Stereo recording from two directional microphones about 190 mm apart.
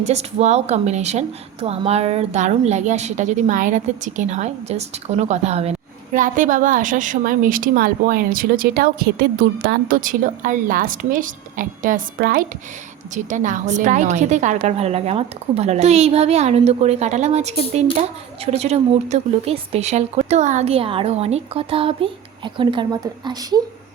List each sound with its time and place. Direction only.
0.0 s a woman's voice: 35° right (ahead or behind); by 23.6 s 20° right (ahead or behind)